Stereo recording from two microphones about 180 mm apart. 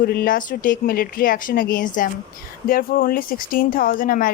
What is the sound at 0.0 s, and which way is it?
Speech, 60° left (ahead or behind).